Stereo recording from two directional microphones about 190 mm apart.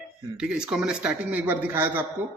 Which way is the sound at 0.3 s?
5° right (ahead or behind).